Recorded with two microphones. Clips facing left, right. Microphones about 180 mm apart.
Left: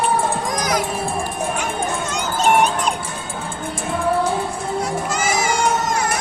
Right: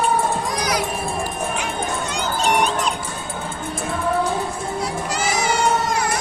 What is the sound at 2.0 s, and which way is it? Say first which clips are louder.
Music: left 4 dB; 45° left (ahead or behind).